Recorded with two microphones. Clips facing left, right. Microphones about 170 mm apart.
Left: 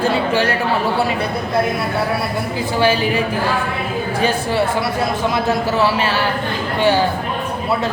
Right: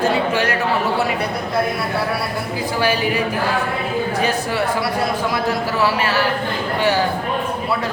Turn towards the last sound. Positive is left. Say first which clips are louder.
# left 1 dB
turn(degrees=25)  # may be behind; listen again after turning